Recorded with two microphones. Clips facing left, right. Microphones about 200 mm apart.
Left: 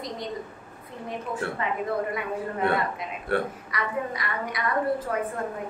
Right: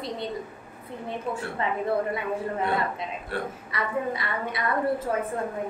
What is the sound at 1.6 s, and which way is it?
Speech, 30° right (ahead or behind).